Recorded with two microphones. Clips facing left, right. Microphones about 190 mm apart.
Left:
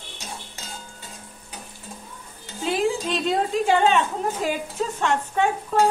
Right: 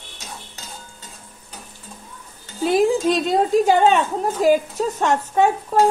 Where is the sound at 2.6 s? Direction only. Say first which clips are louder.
Right 7 dB; 40° right (ahead or behind).